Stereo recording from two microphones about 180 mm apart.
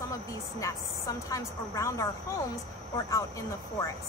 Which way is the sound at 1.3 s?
15° left (ahead or behind).